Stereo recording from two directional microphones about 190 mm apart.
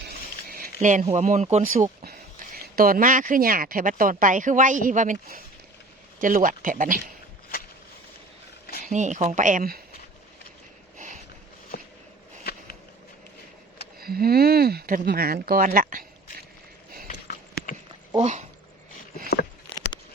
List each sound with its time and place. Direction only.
0.1 s a sound: 50° right (ahead or behind)
0.8 s speech: 40° right (ahead or behind)
8.8 s speech: 40° right (ahead or behind)
10.9 s a sound: 45° right (ahead or behind)
14.0 s speech: 50° right (ahead or behind)
18.2 s speech: 40° right (ahead or behind)